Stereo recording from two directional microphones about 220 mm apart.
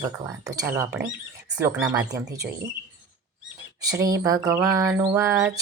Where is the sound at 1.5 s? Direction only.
5° right (ahead or behind).